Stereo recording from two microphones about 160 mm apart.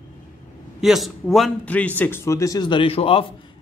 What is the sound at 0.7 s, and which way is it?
A man's voice, centre (ahead or behind).